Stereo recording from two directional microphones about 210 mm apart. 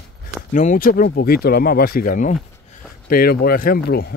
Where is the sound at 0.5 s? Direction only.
35° left (ahead or behind).